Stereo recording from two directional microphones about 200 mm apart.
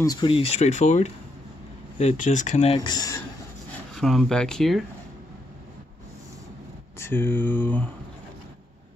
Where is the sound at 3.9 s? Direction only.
Centre (ahead or behind).